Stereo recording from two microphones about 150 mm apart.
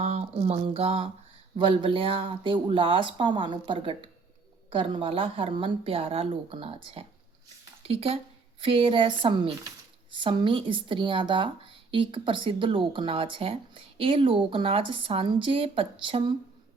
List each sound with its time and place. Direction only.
0.0 s speech: 50° right (ahead or behind)